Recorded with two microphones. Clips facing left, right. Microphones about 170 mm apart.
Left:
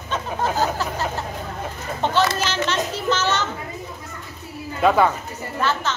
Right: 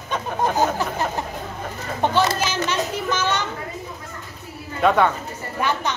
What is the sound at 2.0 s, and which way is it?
Speech, 10° right (ahead or behind).